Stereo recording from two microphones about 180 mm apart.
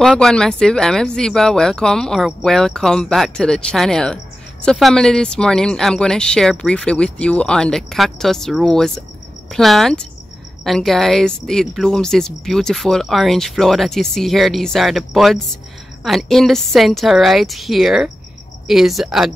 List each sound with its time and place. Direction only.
0.0 s speech: centre (ahead or behind)